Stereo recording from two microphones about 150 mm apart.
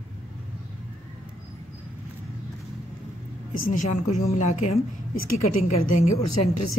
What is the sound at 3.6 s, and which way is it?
A woman's voice, 55° left (ahead or behind).